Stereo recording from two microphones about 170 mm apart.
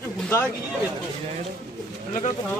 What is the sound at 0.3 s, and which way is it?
Speech, 15° left (ahead or behind).